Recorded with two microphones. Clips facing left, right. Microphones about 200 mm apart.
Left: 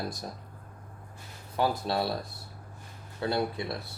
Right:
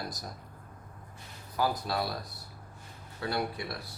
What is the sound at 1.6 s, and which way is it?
Speech, 25° left (ahead or behind).